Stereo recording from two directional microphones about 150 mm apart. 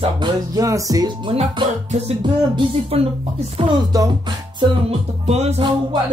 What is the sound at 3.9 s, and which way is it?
Music, 25° right (ahead or behind).